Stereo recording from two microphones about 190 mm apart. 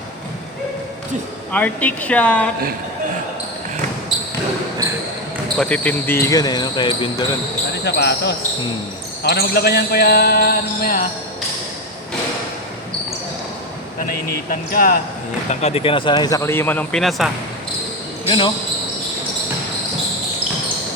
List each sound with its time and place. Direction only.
1.5 s speech: 5° left (ahead or behind)
5.5 s speech: 5° left (ahead or behind); by 7.3 s 25° left (ahead or behind)
7.9 s speech: 65° left (ahead or behind)
14.7 s speech: 50° left (ahead or behind)
15.4 s speech: 30° left (ahead or behind); by 17.3 s centre (ahead or behind)
18.3 s speech: 25° left (ahead or behind)